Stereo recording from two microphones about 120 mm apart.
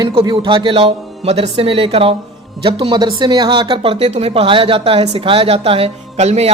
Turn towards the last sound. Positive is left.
turn(degrees=-65)  # may be behind; listen again after turning